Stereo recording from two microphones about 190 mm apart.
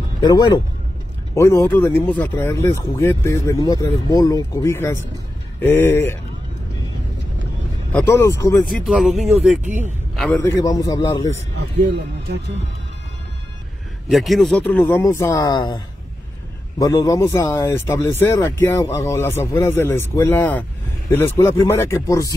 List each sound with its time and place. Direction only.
0.2 s speech: 20° left (ahead or behind)
7.9 s speech: 15° left (ahead or behind)
8.8 s speech: centre (ahead or behind); by 11.4 s 20° left (ahead or behind)
14.0 s speech: centre (ahead or behind); by 15.8 s 20° left (ahead or behind)
16.8 s speech: 20° left (ahead or behind)